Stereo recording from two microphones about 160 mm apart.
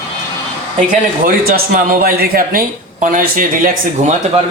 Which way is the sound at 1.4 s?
65° right (ahead or behind).